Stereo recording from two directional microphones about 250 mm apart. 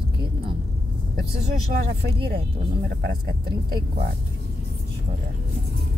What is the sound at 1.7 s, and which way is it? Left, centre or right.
Speech, right.